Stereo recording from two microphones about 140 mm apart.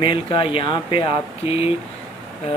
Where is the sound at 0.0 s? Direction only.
35° left (ahead or behind).